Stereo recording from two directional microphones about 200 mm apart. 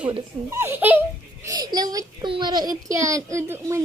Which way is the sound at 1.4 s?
20° right (ahead or behind).